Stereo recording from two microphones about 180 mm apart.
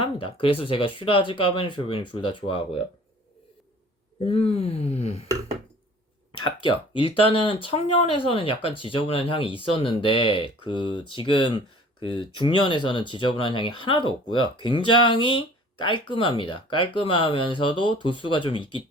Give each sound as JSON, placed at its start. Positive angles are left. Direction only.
{"t": 0.0, "sound": "speech", "side_deg": 30}
{"t": 4.2, "sound": "speech", "side_deg": 30}
{"t": 6.4, "sound": "speech", "side_deg": 25}